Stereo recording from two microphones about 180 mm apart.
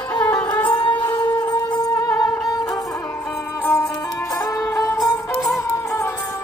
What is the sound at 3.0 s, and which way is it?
Music, 10° left (ahead or behind).